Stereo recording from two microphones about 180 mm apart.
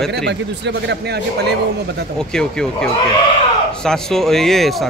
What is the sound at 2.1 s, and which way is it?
A man's voice, 5° left (ahead or behind).